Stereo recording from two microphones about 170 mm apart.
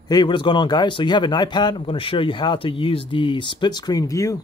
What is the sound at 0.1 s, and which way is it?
Speech, 25° left (ahead or behind).